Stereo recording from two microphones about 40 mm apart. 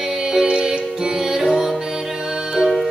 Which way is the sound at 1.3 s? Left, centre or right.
Centre.